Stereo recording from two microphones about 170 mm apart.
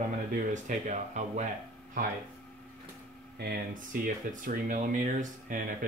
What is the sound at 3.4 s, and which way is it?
Speech, 65° right (ahead or behind).